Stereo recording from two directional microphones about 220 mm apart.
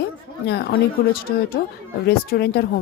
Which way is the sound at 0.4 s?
50° left (ahead or behind).